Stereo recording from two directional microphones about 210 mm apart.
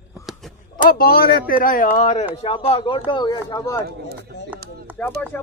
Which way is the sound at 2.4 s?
30° left (ahead or behind).